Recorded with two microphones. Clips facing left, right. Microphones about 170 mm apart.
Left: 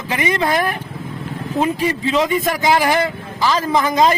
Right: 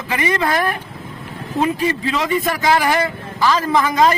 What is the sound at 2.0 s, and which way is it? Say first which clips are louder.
A man's voice: left 2 dB; 20° left (ahead or behind).